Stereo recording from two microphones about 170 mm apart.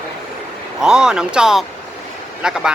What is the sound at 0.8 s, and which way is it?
Speech, 5° right (ahead or behind).